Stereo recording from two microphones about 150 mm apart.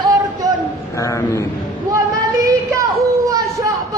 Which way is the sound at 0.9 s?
20° left (ahead or behind).